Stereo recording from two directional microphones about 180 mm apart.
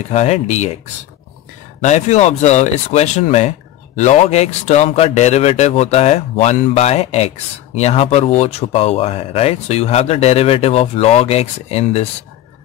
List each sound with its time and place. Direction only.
0.1 s speech: 40° left (ahead or behind)
1.8 s speech: 40° left (ahead or behind)